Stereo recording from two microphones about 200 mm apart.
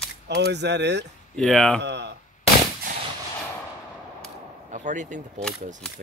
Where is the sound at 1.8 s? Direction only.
60° right (ahead or behind).